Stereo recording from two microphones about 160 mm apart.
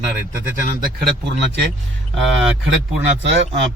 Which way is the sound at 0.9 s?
90° right.